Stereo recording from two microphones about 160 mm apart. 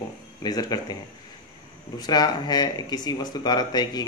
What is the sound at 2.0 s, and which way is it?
Speech, 25° left (ahead or behind).